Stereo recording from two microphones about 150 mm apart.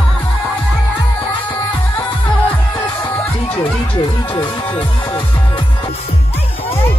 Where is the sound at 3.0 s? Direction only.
35° left (ahead or behind).